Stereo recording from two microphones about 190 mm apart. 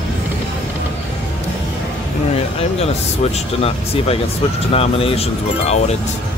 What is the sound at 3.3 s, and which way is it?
Speech, 30° left (ahead or behind).